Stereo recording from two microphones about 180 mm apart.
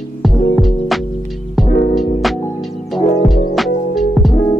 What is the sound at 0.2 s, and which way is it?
Music, centre (ahead or behind).